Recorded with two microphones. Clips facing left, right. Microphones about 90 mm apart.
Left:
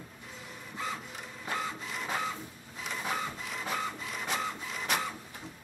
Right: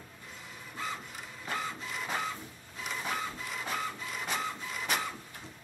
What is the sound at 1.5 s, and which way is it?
Printer, centre (ahead or behind).